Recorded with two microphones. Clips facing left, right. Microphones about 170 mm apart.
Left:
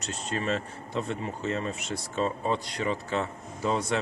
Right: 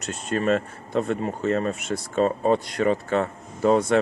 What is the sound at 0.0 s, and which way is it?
Speech, 55° right (ahead or behind).